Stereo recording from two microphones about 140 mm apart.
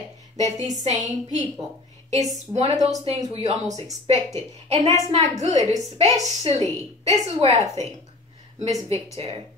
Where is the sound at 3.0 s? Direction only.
45° right (ahead or behind).